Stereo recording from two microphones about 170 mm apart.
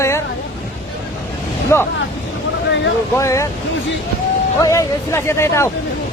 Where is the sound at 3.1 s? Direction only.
15° left (ahead or behind).